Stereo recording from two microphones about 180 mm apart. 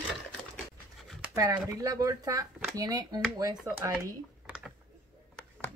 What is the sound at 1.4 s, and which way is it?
Speech, 20° right (ahead or behind).